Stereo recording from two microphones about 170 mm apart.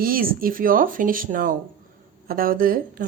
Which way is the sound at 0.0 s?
60° right (ahead or behind).